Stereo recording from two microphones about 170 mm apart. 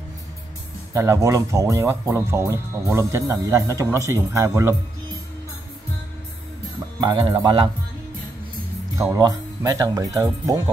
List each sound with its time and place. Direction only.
0.9 s speech: 15° right (ahead or behind)
7.0 s speech: 25° right (ahead or behind)
9.1 s speech: 20° right (ahead or behind)